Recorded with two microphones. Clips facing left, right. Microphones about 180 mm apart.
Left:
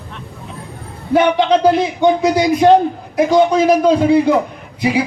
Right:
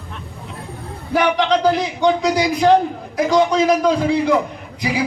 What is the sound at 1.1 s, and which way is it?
Speech, 25° left (ahead or behind).